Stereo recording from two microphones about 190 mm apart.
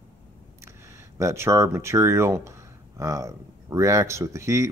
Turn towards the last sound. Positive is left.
turn(degrees=-15)  # may be behind; listen again after turning